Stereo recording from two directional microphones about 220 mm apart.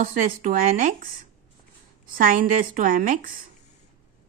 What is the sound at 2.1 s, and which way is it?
A woman's voice, 40° right (ahead or behind).